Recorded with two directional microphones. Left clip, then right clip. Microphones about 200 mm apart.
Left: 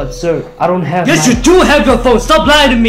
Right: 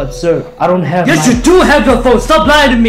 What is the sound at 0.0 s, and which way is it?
Speech, centre (ahead or behind).